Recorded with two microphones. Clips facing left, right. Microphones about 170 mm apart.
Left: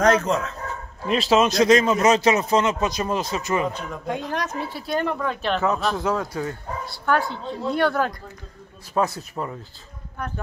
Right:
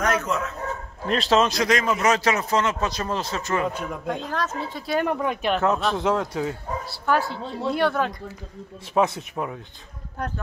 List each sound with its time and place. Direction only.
0.0 s speech: 30° left (ahead or behind)
1.0 s speech: 5° left (ahead or behind)
1.6 s a man's voice: 25° left (ahead or behind)
5.0 s speech: 15° right (ahead or behind)